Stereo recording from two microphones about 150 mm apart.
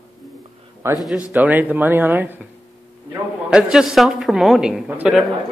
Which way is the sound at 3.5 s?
5° right (ahead or behind).